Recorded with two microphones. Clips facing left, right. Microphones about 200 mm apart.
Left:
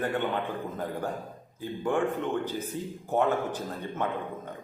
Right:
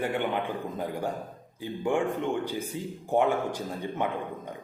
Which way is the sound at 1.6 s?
15° right (ahead or behind).